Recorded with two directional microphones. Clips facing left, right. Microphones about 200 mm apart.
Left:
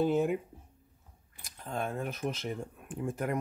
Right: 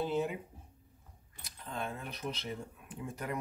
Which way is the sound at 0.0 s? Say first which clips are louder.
Left 6 dB; 50° left (ahead or behind).